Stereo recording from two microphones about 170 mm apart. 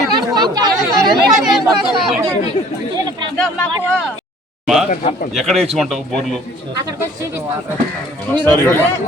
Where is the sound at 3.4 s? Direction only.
10° left (ahead or behind).